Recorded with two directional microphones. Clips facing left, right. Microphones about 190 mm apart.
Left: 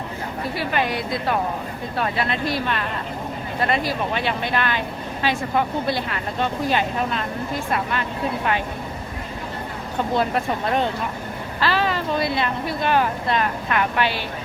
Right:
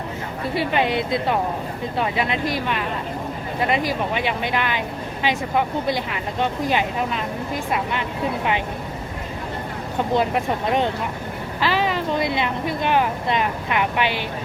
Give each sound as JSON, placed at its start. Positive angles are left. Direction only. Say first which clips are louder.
{"t": 0.5, "sound": "a woman's voice", "louder": "right 4 dB", "side_deg": -25}
{"t": 10.2, "sound": "speech", "louder": "right 1 dB", "side_deg": -15}